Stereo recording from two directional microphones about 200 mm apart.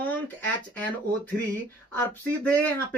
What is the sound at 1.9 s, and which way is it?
Speech, 10° left (ahead or behind).